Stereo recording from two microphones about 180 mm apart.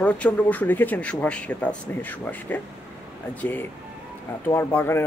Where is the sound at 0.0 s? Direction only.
10° left (ahead or behind).